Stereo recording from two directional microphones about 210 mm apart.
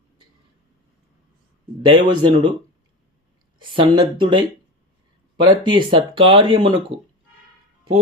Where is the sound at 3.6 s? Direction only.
25° right (ahead or behind).